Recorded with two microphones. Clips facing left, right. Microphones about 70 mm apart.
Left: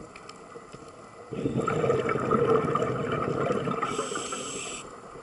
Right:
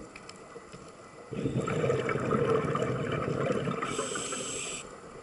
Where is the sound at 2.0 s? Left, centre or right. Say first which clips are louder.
Left 4 dB; centre.